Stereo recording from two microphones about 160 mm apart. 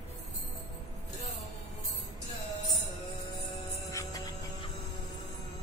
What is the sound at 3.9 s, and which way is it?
Music, 20° left (ahead or behind).